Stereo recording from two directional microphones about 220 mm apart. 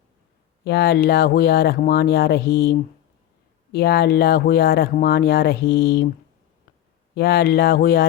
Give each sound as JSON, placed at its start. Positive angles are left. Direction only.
{"t": 0.6, "sound": "speech", "side_deg": 50}
{"t": 7.1, "sound": "speech", "side_deg": 45}